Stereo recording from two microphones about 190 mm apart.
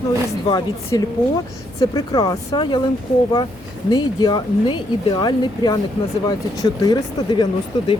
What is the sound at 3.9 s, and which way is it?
Speech, 20° left (ahead or behind).